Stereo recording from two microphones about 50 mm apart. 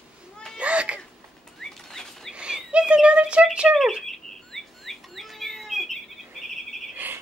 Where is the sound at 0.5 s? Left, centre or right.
Right.